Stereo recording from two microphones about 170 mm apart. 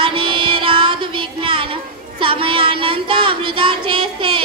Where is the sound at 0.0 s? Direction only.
30° right (ahead or behind).